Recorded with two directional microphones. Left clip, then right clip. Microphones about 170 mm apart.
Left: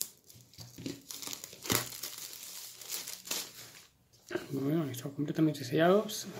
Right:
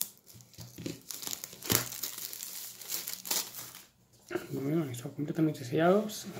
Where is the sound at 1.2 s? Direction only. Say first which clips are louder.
Right 2 dB; 15° right (ahead or behind).